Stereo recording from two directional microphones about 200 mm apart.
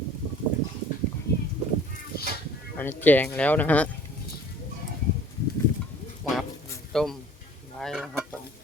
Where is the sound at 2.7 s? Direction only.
10° left (ahead or behind).